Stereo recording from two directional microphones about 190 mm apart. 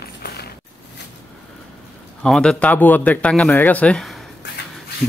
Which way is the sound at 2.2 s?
Centre (ahead or behind).